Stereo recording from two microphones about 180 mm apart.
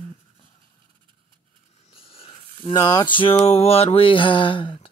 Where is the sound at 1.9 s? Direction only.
30° left (ahead or behind).